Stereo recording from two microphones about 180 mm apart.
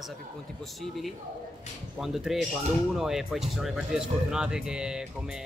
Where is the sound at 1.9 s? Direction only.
Centre (ahead or behind).